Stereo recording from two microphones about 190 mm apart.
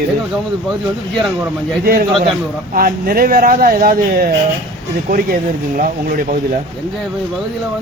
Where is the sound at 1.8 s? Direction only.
55° right (ahead or behind).